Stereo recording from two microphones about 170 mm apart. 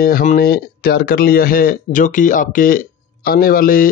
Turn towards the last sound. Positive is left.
turn(degrees=55)  # may be behind; listen again after turning